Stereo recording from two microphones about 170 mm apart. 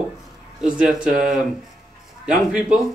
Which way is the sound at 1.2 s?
Centre (ahead or behind).